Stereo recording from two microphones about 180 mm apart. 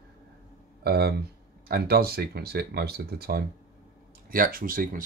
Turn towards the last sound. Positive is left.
turn(degrees=-50)  # may be behind; listen again after turning